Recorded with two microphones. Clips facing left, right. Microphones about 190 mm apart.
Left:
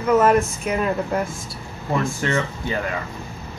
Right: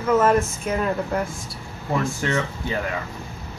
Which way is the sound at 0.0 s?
15° left (ahead or behind).